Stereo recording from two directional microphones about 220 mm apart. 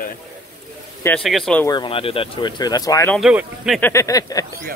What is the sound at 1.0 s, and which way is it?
Speech, 5° left (ahead or behind).